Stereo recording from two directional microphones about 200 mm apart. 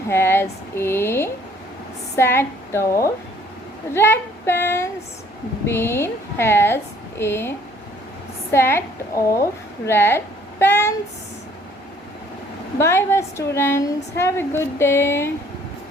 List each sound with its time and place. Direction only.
0.1 s a sound: 10° left (ahead or behind)
0.8 s a woman's voice: 10° left (ahead or behind)
8.5 s a woman's voice: 10° left (ahead or behind)
12.8 s a woman's voice: 10° left (ahead or behind)